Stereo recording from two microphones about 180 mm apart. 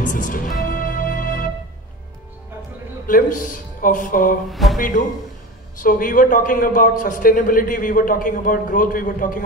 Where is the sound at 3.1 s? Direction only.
45° left (ahead or behind).